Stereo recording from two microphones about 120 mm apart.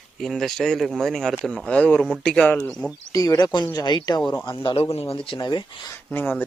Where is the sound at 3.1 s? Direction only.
30° left (ahead or behind).